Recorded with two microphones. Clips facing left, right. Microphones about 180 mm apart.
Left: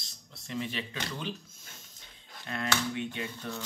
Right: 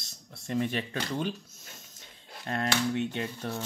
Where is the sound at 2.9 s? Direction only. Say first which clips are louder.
Right 4 dB; 45° right (ahead or behind).